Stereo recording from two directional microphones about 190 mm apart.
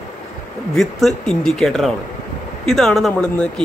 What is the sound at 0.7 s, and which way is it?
A man's voice, 5° left (ahead or behind).